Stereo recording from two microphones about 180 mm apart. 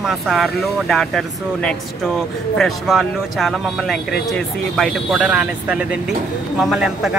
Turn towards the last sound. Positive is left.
turn(degrees=-5)  # may be behind; listen again after turning